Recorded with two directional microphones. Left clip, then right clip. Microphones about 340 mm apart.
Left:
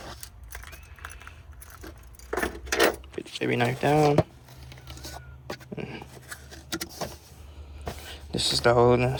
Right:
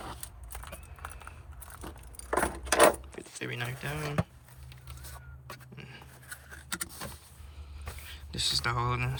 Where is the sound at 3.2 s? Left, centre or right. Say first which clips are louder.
Left 11 dB; centre.